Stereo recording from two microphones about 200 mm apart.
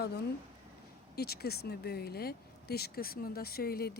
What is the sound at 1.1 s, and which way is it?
Speech, 50° left (ahead or behind).